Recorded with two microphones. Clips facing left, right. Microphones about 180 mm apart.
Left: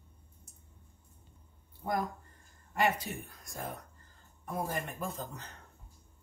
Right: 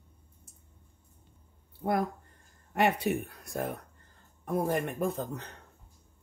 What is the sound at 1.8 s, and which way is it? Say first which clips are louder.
Speech: right 5 dB; 65° right (ahead or behind).